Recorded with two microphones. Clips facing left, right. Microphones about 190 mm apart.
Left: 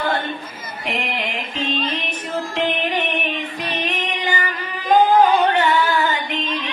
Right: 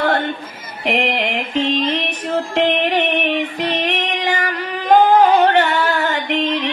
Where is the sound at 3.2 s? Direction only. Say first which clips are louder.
Right 6 dB; 65° right (ahead or behind).